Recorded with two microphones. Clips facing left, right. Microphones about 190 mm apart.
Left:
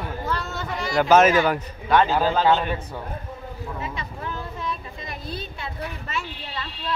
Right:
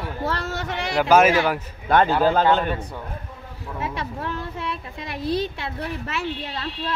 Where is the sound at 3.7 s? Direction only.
75° right (ahead or behind).